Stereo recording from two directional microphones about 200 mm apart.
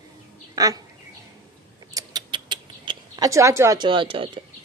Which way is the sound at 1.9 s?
20° right (ahead or behind).